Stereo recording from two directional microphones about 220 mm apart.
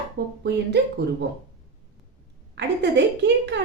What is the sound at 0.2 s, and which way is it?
Speech, 50° right (ahead or behind).